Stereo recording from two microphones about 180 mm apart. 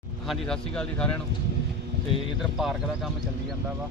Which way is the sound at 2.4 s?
Centre (ahead or behind).